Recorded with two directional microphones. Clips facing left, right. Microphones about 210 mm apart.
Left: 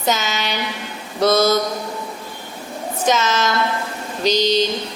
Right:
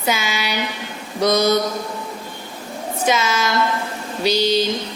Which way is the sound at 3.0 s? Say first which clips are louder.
Left 1 dB; 10° right (ahead or behind).